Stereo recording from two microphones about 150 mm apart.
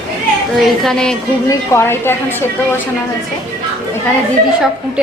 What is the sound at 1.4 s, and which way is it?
A woman's voice, 15° left (ahead or behind).